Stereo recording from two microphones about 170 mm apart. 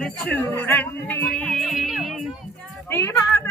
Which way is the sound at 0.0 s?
10° left (ahead or behind).